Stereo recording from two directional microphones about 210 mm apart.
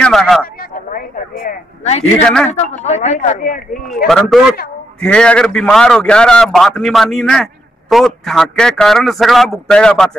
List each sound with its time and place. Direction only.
0.0 s a man's voice: centre (ahead or behind)
0.6 s a sound: 45° left (ahead or behind)
2.2 s a man's voice: 5° left (ahead or behind)
2.5 s speech: 30° left (ahead or behind)
4.1 s a man's voice: centre (ahead or behind)